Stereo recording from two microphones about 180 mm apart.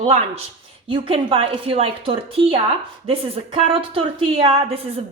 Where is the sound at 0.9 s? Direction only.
30° right (ahead or behind).